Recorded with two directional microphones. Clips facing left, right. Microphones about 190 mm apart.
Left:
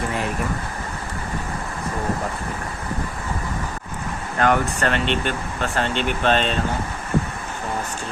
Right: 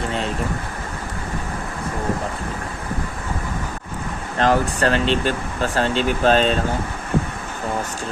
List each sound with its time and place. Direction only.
4.4 s speech: 30° right (ahead or behind)